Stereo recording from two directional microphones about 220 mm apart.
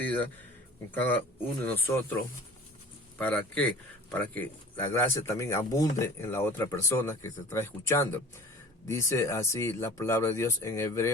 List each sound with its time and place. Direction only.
0.0 s a sound: 10° left (ahead or behind)
1.6 s speech: 10° left (ahead or behind)
3.2 s speech: 5° left (ahead or behind)